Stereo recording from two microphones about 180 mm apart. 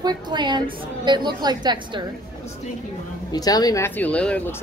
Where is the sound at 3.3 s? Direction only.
20° left (ahead or behind).